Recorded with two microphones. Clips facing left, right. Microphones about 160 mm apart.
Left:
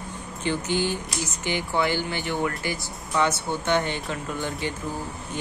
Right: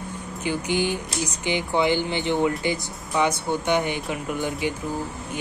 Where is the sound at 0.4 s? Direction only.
10° right (ahead or behind).